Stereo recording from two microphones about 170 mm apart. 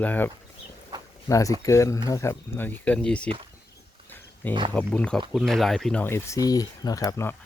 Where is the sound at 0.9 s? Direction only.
25° right (ahead or behind).